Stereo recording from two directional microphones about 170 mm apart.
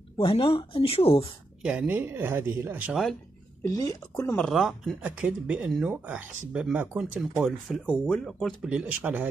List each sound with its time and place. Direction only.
0.2 s speech: 30° left (ahead or behind)
1.6 s speech: 5° right (ahead or behind)
3.6 s speech: 20° left (ahead or behind)
4.4 s speech: centre (ahead or behind)
8.6 s speech: 10° right (ahead or behind)